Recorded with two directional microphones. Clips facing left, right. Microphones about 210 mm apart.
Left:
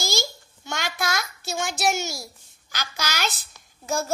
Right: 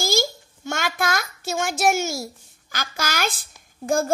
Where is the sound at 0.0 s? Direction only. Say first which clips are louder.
Right 5 dB; 50° right (ahead or behind).